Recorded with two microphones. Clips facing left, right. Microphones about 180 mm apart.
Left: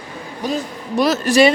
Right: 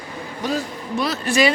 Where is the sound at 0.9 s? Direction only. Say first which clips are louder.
Left 7 dB; 90° left.